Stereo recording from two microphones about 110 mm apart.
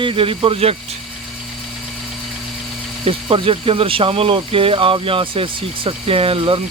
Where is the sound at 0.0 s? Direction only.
55° right (ahead or behind).